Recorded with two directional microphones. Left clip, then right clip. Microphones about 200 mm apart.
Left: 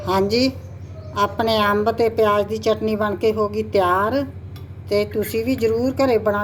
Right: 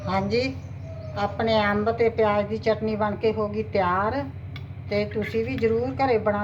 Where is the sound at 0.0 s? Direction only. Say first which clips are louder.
Left 6 dB; 55° left (ahead or behind).